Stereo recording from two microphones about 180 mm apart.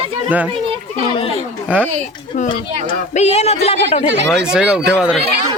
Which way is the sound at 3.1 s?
40° left (ahead or behind).